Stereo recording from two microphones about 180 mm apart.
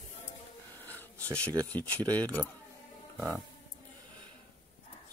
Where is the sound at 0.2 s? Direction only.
10° left (ahead or behind).